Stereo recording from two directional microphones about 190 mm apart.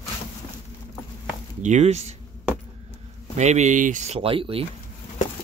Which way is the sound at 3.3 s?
35° right (ahead or behind).